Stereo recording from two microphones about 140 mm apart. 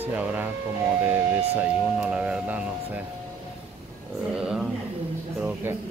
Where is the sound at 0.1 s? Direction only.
10° right (ahead or behind).